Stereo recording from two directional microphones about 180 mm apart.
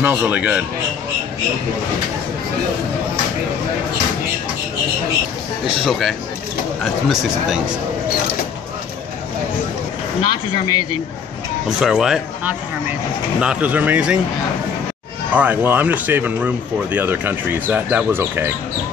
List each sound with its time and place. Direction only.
0.0 s speech: 10° right (ahead or behind)
5.9 s speech: centre (ahead or behind)
10.2 s speech: 20° left (ahead or behind)
11.8 s speech: 5° right (ahead or behind)
15.3 s speech: 10° right (ahead or behind)